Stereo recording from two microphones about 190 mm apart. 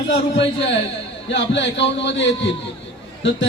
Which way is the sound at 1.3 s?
70° left (ahead or behind).